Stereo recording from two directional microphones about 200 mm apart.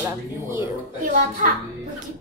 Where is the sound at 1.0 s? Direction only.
40° right (ahead or behind).